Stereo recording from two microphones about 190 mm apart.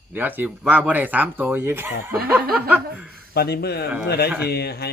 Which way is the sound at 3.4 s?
55° left (ahead or behind).